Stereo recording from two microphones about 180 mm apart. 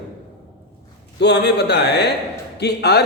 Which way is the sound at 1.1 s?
70° left (ahead or behind).